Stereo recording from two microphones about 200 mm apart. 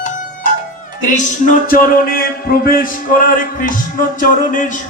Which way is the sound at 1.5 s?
45° left (ahead or behind).